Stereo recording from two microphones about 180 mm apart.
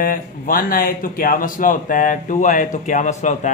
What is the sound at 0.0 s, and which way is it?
Speech, 50° left (ahead or behind).